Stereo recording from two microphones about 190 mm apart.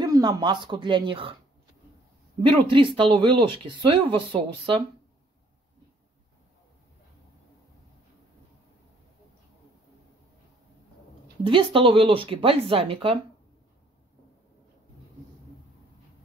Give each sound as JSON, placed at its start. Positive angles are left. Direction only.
{"t": 0.0, "sound": "speech", "side_deg": -20}
{"t": 2.5, "sound": "speech", "side_deg": -25}
{"t": 11.4, "sound": "speech", "side_deg": -30}